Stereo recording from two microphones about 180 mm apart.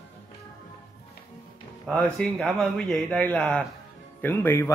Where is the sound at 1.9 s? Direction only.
5° left (ahead or behind).